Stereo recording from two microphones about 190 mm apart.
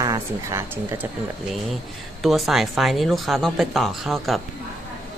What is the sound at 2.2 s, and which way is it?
Speech, centre (ahead or behind).